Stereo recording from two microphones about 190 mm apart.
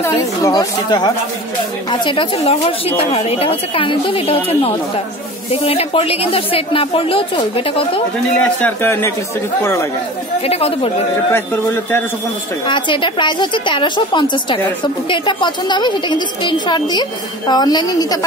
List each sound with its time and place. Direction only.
0.0 s a woman's voice: 15° left (ahead or behind)
5.5 s a woman's voice: 30° left (ahead or behind)
8.4 s speech: 10° left (ahead or behind)
10.4 s speech: 30° left (ahead or behind)
11.3 s speech: 10° left (ahead or behind)
12.6 s a woman's voice: 25° left (ahead or behind)